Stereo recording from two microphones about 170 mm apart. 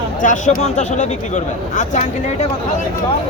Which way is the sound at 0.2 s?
50° left (ahead or behind).